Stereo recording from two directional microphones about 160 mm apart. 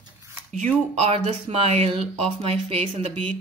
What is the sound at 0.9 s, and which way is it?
Speech, 40° right (ahead or behind).